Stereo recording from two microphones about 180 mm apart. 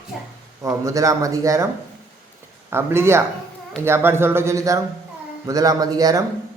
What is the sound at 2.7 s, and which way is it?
A man's voice, 15° right (ahead or behind).